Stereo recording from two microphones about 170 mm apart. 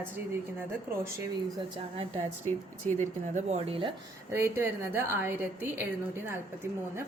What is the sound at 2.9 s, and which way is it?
Speech, 45° right (ahead or behind).